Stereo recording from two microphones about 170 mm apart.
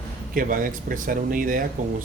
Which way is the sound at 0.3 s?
55° right (ahead or behind).